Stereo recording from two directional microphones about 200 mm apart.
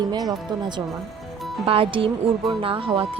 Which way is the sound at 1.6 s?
25° right (ahead or behind).